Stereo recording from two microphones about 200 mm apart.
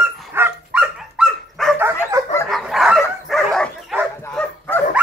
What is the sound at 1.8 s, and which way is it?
Dog, 10° right (ahead or behind).